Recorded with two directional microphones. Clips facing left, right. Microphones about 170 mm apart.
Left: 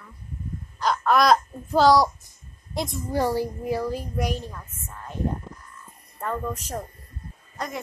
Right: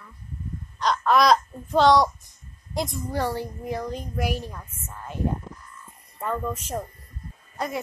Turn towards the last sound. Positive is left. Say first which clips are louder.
# right 3 dB
turn(degrees=-5)  # may be behind; listen again after turning